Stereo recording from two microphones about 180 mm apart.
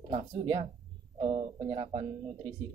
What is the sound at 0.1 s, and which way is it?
Speech, 30° right (ahead or behind).